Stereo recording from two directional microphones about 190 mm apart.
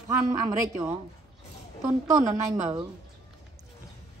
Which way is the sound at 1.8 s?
20° right (ahead or behind).